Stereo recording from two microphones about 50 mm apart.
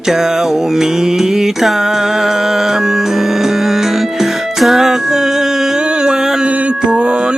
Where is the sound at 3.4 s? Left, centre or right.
Centre.